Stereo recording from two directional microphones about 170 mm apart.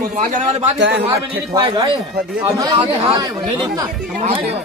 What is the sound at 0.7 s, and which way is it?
Speech, 90° right.